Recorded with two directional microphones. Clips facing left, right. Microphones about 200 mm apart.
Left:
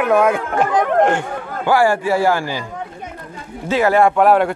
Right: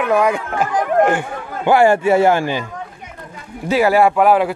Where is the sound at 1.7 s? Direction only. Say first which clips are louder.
Right 3 dB; 20° right (ahead or behind).